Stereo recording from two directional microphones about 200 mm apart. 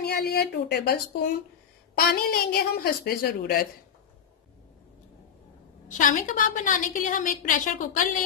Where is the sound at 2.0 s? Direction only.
50° left (ahead or behind).